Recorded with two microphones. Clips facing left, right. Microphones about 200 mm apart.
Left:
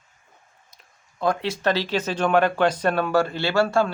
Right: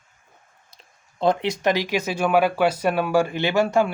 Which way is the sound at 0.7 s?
25° right (ahead or behind).